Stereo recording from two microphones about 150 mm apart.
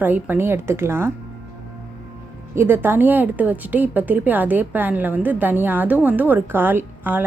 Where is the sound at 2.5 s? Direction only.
15° right (ahead or behind).